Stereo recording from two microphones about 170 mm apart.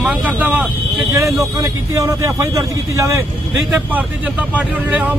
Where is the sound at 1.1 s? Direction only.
20° right (ahead or behind).